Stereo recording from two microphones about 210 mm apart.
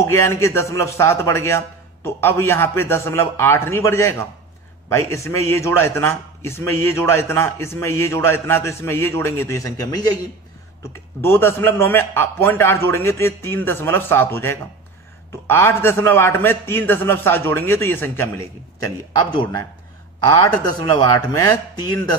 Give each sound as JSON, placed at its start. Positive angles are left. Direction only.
{"t": 0.0, "sound": "speech", "side_deg": 15}
{"t": 11.1, "sound": "speech", "side_deg": 10}
{"t": 19.1, "sound": "a man's voice", "side_deg": 20}